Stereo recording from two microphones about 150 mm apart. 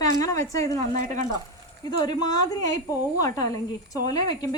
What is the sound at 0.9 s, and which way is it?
Speech, 55° right (ahead or behind).